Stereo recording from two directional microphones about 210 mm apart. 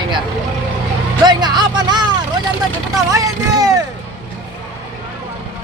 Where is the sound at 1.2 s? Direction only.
20° right (ahead or behind).